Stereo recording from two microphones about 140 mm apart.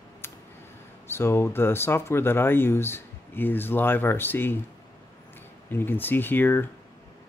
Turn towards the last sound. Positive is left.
turn(degrees=15)  # may be behind; listen again after turning